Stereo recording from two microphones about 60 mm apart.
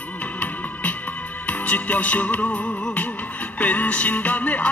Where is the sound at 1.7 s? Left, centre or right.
Left.